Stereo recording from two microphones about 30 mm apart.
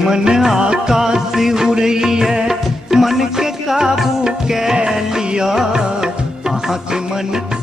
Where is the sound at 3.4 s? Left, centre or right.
Centre.